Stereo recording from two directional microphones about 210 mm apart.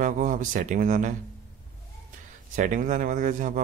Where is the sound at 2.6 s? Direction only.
35° right (ahead or behind).